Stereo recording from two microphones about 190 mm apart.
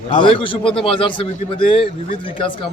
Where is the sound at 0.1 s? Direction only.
25° left (ahead or behind).